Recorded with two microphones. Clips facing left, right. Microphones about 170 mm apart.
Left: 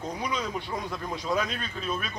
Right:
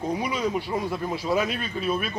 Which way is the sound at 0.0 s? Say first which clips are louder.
Right 5 dB; 10° right (ahead or behind).